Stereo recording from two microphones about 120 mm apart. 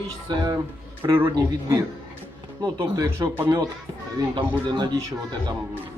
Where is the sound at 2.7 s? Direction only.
30° right (ahead or behind).